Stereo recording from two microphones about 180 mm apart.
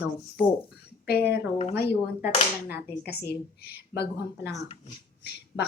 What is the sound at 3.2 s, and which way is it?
Speech, 65° left (ahead or behind).